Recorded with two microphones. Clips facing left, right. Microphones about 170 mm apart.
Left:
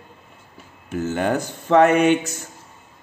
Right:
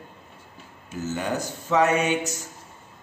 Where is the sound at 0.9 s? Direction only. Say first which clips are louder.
Left 6 dB; 60° left (ahead or behind).